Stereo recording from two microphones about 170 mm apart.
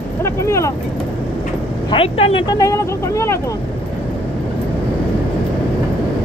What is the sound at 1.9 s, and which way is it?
Speech, 35° left (ahead or behind).